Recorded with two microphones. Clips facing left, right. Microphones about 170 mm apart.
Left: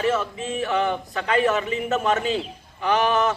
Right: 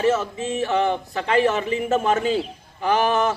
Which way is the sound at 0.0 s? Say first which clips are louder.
Right 3 dB; 25° right (ahead or behind).